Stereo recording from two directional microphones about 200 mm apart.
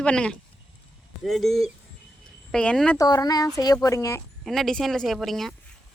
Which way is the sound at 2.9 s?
20° left (ahead or behind).